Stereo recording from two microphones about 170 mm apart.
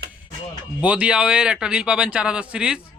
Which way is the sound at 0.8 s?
5° right (ahead or behind).